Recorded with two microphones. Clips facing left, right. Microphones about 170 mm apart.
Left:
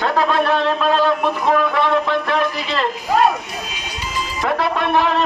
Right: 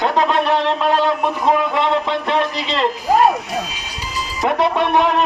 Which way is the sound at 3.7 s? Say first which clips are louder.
Left 1 dB; 35° right (ahead or behind).